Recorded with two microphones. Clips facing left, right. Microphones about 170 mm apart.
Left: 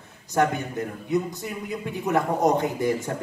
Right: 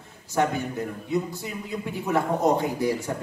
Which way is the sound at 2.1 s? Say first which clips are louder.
Left 1 dB; 20° left (ahead or behind).